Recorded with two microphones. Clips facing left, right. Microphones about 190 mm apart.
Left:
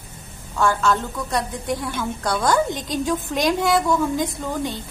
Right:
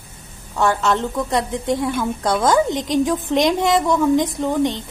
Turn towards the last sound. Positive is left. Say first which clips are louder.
# right 7 dB
turn(degrees=-20)  # may be behind; listen again after turning